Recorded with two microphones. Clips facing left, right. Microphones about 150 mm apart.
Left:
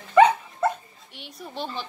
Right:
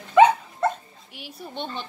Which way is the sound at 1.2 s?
Centre (ahead or behind).